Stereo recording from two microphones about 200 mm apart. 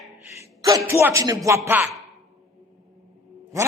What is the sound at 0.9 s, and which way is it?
Speech, 15° right (ahead or behind).